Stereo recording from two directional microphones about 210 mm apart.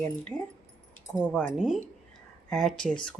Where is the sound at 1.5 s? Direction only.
5° right (ahead or behind).